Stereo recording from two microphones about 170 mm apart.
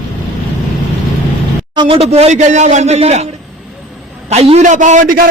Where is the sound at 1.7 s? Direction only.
30° right (ahead or behind).